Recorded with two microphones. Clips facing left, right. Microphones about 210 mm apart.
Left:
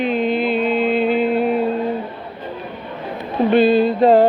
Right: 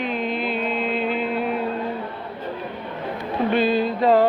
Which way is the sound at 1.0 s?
Centre (ahead or behind).